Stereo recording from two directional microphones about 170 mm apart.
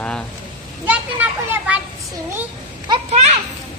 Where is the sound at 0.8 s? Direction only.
10° right (ahead or behind).